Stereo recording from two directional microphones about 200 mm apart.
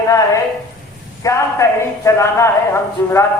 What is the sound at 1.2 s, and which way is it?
Speech, 15° left (ahead or behind).